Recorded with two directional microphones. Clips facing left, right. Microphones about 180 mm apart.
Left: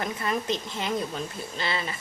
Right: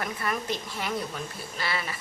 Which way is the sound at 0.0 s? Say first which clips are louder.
Left 2 dB; 25° left (ahead or behind).